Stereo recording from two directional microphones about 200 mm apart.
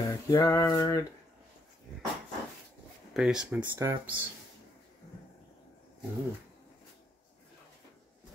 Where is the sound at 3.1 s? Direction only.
5° right (ahead or behind).